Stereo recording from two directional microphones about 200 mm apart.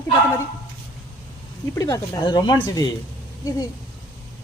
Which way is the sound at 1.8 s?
15° left (ahead or behind).